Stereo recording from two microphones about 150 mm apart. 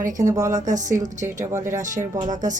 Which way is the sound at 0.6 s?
55° right (ahead or behind).